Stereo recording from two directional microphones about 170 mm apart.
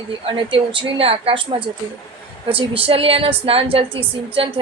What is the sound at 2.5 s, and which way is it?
A woman's voice, 35° right (ahead or behind).